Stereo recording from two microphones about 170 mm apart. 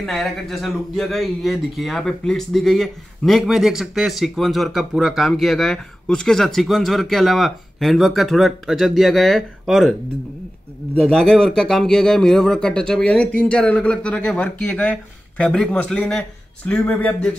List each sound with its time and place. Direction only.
0.0 s speech: centre (ahead or behind)
11.1 s speech: 5° left (ahead or behind)